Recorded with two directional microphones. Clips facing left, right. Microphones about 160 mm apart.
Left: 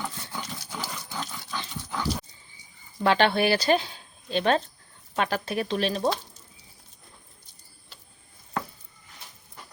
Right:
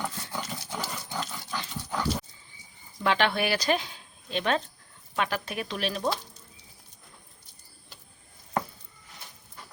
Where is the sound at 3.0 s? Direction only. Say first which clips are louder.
Left 4 dB; 35° left (ahead or behind).